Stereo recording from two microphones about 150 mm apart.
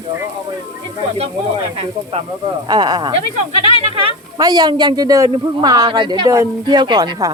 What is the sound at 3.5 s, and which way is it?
Speech, 35° left (ahead or behind).